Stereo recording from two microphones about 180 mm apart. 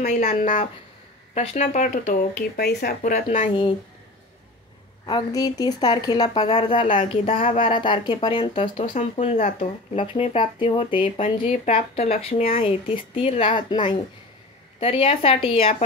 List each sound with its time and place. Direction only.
0.0 s speech: 45° left (ahead or behind); by 3.7 s 30° left (ahead or behind)
5.0 s speech: 25° left (ahead or behind)
7.0 s speech: 45° left (ahead or behind)
7.7 s speech: 25° left (ahead or behind)